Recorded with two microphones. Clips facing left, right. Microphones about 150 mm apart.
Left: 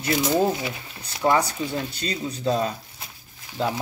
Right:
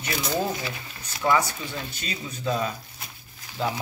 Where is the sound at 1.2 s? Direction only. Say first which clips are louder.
Left 2 dB; 35° left (ahead or behind).